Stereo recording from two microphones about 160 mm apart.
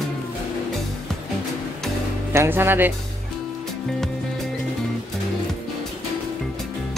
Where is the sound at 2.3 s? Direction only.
15° right (ahead or behind).